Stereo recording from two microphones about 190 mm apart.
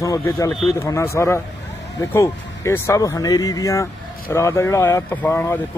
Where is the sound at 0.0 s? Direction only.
15° left (ahead or behind).